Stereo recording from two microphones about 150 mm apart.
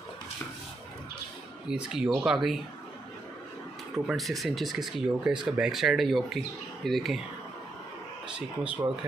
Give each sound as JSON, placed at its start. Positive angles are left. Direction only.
{"t": 1.7, "sound": "speech", "side_deg": -5}
{"t": 3.9, "sound": "speech", "side_deg": 0}
{"t": 8.3, "sound": "speech", "side_deg": -5}